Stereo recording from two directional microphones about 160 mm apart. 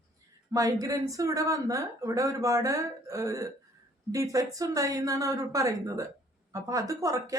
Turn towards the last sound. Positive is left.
turn(degrees=-20)  # may be behind; listen again after turning